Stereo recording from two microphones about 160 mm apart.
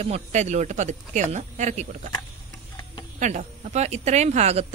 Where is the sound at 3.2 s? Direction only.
50° right (ahead or behind).